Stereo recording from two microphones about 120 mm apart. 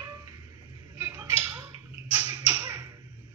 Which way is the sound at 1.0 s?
15° right (ahead or behind).